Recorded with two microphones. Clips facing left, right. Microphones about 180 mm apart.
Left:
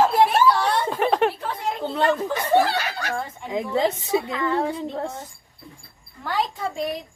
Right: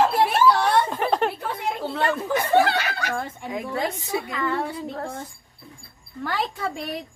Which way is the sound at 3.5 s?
25° left (ahead or behind).